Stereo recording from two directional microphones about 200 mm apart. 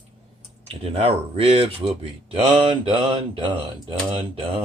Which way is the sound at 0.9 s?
30° right (ahead or behind).